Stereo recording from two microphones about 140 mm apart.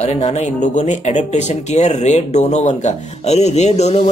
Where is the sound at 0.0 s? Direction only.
50° left (ahead or behind).